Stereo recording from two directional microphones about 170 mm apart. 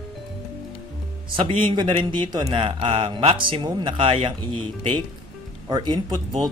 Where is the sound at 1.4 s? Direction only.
30° right (ahead or behind).